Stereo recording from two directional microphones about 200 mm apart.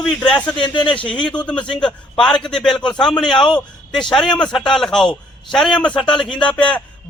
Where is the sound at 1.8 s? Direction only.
5° left (ahead or behind).